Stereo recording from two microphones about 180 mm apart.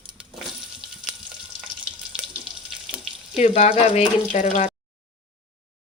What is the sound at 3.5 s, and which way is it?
Speech, 30° left (ahead or behind).